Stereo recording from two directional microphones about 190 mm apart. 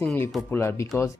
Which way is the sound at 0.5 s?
15° left (ahead or behind).